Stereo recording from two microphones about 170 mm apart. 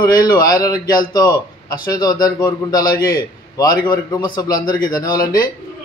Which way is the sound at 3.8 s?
25° left (ahead or behind).